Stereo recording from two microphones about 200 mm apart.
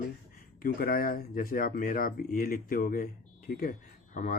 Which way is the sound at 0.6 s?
45° left (ahead or behind).